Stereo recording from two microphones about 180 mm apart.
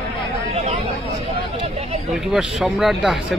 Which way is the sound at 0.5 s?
30° right (ahead or behind).